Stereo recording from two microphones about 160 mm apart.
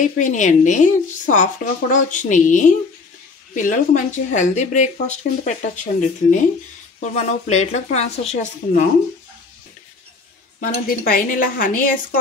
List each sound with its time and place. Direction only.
0.0 s speech: 50° left (ahead or behind)
10.6 s speech: 60° left (ahead or behind)